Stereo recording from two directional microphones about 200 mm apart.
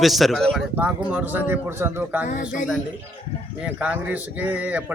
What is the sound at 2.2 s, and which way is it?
Speech, 45° left (ahead or behind).